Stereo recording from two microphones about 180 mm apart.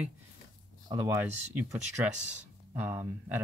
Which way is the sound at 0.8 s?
15° right (ahead or behind).